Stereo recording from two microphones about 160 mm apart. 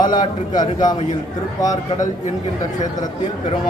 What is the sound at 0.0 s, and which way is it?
Speech, 25° left (ahead or behind).